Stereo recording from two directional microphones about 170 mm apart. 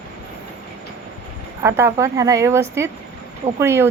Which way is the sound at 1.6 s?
15° right (ahead or behind).